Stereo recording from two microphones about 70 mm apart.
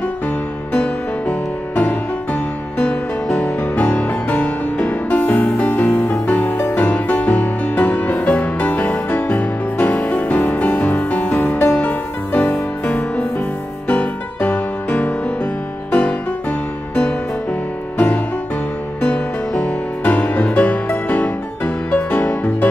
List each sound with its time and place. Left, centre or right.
0.7 s music: centre
2.8 s music: centre
17.9 s music: centre